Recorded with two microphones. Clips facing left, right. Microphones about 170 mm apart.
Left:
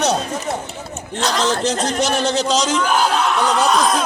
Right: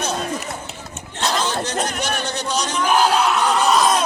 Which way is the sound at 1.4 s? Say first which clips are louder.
Left 4 dB; 90° left.